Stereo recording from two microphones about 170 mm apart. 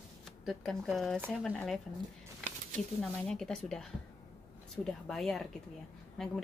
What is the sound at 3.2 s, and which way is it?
Speech, 5° left (ahead or behind).